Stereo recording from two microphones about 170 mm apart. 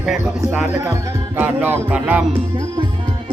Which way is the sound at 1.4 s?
10° right (ahead or behind).